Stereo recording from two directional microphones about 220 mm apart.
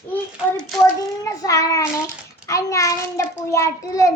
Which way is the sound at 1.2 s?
15° left (ahead or behind).